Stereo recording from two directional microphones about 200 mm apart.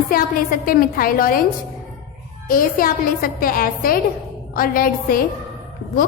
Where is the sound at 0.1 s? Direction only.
45° left (ahead or behind).